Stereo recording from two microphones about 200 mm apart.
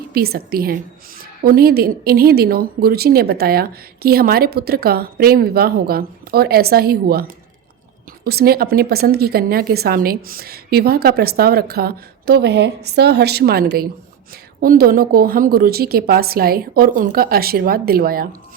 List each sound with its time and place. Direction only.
0.1 s speech: 50° right (ahead or behind)